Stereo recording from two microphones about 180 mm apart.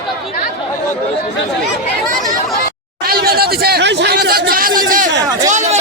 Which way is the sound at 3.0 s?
60° right (ahead or behind).